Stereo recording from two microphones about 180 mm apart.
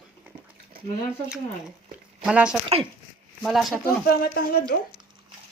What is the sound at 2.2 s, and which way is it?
Speech, 5° right (ahead or behind).